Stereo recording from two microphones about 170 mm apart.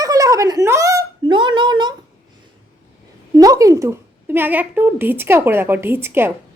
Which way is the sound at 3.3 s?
20° right (ahead or behind).